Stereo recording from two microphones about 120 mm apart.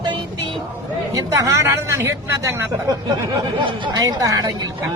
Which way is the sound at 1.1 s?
30° right (ahead or behind).